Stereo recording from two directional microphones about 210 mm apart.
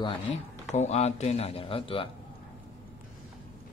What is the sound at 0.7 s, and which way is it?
Speech, 30° left (ahead or behind).